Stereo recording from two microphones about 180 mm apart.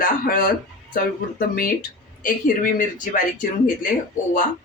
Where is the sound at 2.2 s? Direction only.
50° left (ahead or behind).